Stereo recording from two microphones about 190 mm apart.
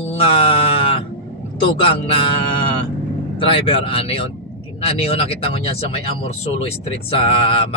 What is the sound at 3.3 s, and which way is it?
A man's voice, 30° left (ahead or behind).